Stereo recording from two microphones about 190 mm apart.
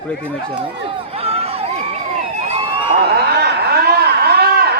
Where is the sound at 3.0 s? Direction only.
60° right (ahead or behind).